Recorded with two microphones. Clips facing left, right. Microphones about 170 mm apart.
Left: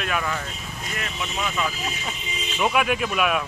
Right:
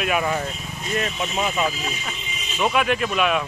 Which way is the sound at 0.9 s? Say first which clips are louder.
Right 7 dB; 25° right (ahead or behind).